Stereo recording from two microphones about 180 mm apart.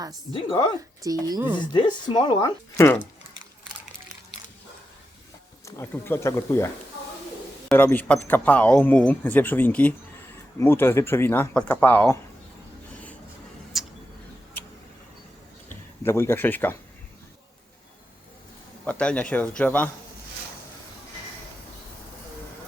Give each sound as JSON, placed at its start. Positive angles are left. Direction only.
{"t": 0.3, "sound": "speech", "side_deg": 30}
{"t": 1.2, "sound": "speech", "side_deg": -15}
{"t": 1.5, "sound": "speech", "side_deg": 25}
{"t": 5.6, "sound": "speech", "side_deg": 15}
{"t": 7.7, "sound": "speech", "side_deg": 10}
{"t": 13.7, "sound": "tick-tock", "side_deg": 0}
{"t": 15.7, "sound": "a man's voice", "side_deg": 15}
{"t": 18.9, "sound": "speech", "side_deg": 5}